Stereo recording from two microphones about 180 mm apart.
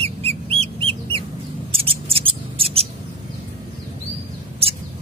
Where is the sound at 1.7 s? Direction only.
30° right (ahead or behind).